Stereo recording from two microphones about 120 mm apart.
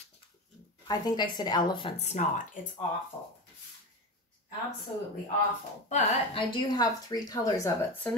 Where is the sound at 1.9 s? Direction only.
80° left.